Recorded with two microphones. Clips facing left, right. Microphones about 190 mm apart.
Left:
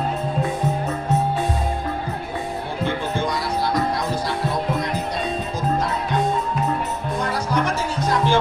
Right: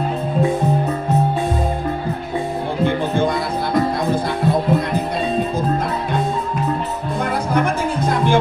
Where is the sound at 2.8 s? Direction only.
55° right (ahead or behind).